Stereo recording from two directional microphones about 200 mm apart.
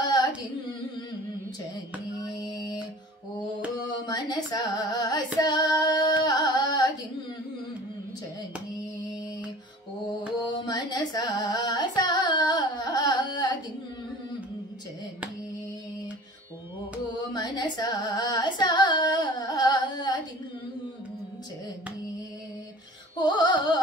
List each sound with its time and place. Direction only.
0.0 s carnatic music: 20° left (ahead or behind)
2.2 s female singing: 15° left (ahead or behind)
4.0 s music: 20° left (ahead or behind)
10.5 s carnatic music: 20° left (ahead or behind)
17.3 s singing: 20° left (ahead or behind)
23.1 s music: 20° left (ahead or behind)